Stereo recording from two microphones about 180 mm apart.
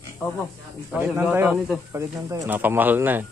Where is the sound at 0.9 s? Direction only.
10° right (ahead or behind).